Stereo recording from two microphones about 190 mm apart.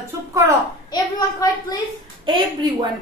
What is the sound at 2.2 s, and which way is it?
Speech, 25° right (ahead or behind).